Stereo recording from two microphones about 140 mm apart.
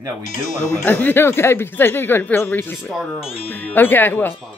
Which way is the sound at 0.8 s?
15° left (ahead or behind).